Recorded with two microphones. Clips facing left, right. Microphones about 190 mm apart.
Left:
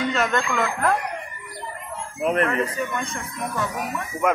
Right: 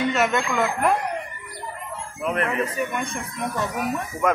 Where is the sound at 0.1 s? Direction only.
5° right (ahead or behind).